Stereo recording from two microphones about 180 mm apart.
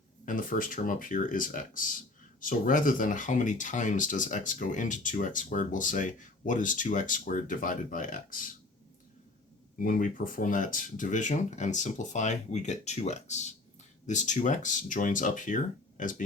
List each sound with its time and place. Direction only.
0.3 s speech: 50° left (ahead or behind)
9.8 s speech: 50° left (ahead or behind)